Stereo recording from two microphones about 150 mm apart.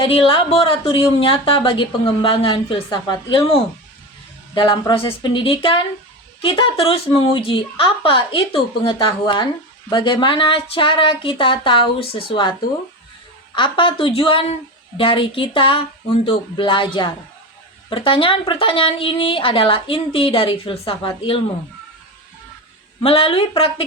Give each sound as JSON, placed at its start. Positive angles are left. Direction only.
{"t": 0.1, "sound": "a woman's voice", "side_deg": 40}
{"t": 23.0, "sound": "a woman's voice", "side_deg": 40}